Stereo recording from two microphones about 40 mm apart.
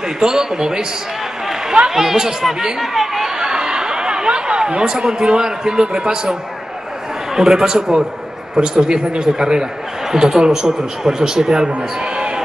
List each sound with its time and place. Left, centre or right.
0.2 s a man's voice: centre
1.9 s speech: centre
7.3 s a man's voice: centre
12.0 s a sound: right